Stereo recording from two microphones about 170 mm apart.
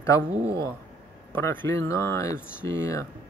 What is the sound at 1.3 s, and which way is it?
Speech, 15° left (ahead or behind).